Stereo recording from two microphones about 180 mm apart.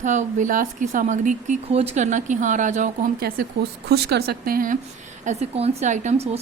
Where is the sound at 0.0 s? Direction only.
45° right (ahead or behind).